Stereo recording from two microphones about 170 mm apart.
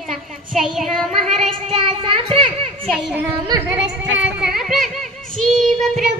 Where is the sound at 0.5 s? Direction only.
Centre (ahead or behind).